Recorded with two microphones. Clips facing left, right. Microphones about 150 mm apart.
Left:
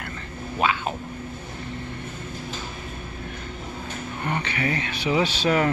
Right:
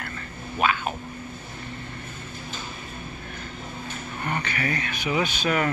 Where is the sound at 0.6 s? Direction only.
25° left (ahead or behind).